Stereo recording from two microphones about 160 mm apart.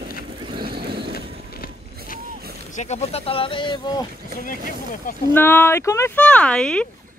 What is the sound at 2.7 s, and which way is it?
Speech, 45° left (ahead or behind).